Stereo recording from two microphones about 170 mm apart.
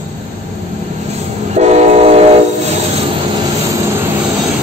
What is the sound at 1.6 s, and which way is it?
Train, 40° right (ahead or behind).